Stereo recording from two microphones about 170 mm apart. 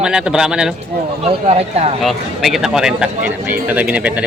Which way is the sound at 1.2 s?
40° right (ahead or behind).